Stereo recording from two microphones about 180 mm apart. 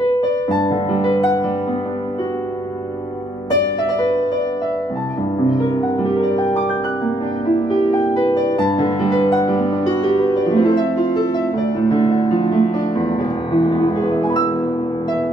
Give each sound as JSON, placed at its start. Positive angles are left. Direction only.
{"t": 0.5, "sound": "music", "side_deg": 25}
{"t": 6.0, "sound": "music", "side_deg": 25}
{"t": 8.1, "sound": "music", "side_deg": 25}